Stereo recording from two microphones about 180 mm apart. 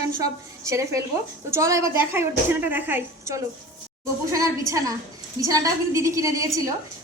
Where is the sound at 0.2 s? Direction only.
15° right (ahead or behind).